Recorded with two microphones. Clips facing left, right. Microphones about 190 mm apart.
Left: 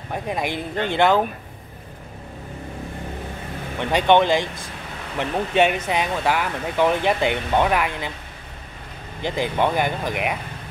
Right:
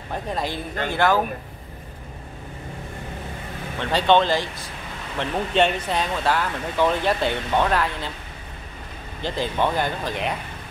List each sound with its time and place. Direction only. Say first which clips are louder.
0.1 s speech: left 2 dB; 15° left (ahead or behind)
3.8 s speech: left 2 dB; 15° left (ahead or behind)
9.2 s speech: left 2 dB; 15° left (ahead or behind)